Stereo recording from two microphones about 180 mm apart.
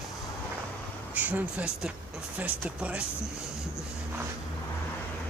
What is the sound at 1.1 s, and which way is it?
Speech, 10° right (ahead or behind).